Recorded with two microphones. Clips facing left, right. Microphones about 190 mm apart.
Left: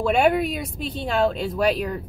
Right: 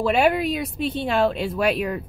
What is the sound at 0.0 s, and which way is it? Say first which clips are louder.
Speech: even; 5° right (ahead or behind).